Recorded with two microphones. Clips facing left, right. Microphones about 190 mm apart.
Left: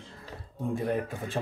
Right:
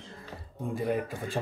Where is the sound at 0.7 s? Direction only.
Centre (ahead or behind).